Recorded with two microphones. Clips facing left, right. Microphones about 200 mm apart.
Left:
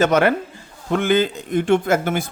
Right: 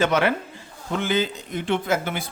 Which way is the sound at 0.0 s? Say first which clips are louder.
Left 5 dB; 45° left (ahead or behind).